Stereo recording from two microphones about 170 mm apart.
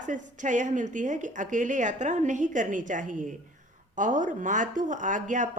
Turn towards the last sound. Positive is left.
turn(degrees=-45)  # may be behind; listen again after turning